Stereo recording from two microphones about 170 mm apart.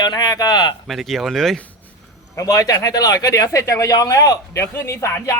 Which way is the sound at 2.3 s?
20° left (ahead or behind).